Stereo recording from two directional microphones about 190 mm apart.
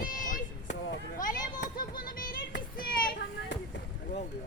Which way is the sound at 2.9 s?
50° left (ahead or behind).